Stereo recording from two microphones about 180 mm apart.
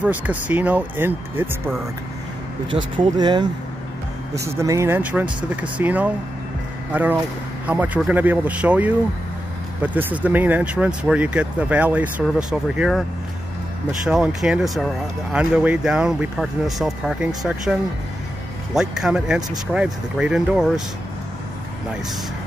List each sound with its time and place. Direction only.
0.0 s speech: 10° right (ahead or behind)
2.7 s speech: 25° right (ahead or behind)
4.6 s speech: 15° right (ahead or behind)
14.0 s speech: 5° right (ahead or behind)
18.8 s speech: 5° right (ahead or behind)